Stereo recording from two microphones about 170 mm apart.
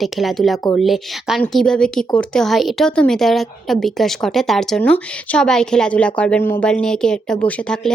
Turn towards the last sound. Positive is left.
turn(degrees=5)  # may be behind; listen again after turning